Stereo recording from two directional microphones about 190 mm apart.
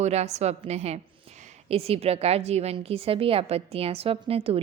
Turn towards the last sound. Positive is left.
turn(degrees=-30)  # may be behind; listen again after turning